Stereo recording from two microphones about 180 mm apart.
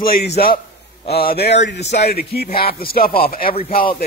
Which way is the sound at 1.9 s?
40° left (ahead or behind).